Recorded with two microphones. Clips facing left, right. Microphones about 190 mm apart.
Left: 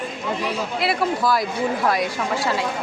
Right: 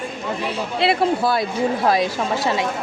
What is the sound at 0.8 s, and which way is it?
Speech, 25° right (ahead or behind).